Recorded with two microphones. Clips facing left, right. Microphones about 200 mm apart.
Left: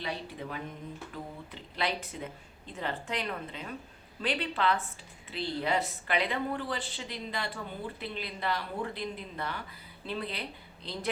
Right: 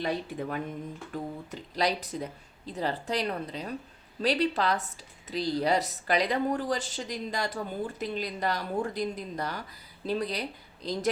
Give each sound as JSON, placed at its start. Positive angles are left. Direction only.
{"t": 0.0, "sound": "speech", "side_deg": -50}
{"t": 1.1, "sound": "a sound", "side_deg": -45}
{"t": 1.5, "sound": "speech", "side_deg": -40}